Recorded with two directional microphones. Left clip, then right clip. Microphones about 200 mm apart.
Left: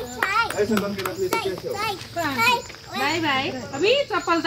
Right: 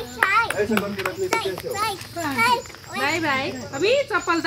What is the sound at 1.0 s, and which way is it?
Speech, 20° left (ahead or behind).